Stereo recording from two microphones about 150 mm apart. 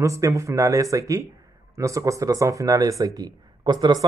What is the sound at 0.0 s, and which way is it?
Speech, 20° right (ahead or behind).